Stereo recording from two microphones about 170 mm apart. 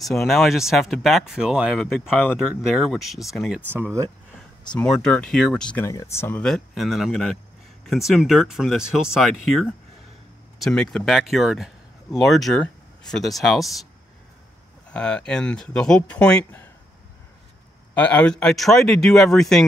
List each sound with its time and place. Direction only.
0.0 s speech: centre (ahead or behind)
3.6 s speech: 10° right (ahead or behind)
4.7 s speech: 5° left (ahead or behind)
5.9 s speech: 15° left (ahead or behind)
6.4 s speech: centre (ahead or behind)
14.9 s speech: 5° left (ahead or behind)
17.9 s speech: 10° left (ahead or behind)